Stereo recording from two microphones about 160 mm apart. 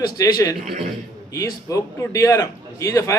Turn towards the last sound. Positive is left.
turn(degrees=20)  # may be behind; listen again after turning